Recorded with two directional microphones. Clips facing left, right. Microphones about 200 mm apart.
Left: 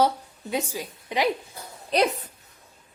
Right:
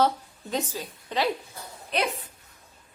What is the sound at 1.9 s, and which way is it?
Speech, 40° left (ahead or behind).